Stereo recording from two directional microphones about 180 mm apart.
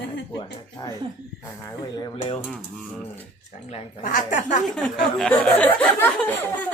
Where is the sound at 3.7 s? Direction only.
40° left (ahead or behind).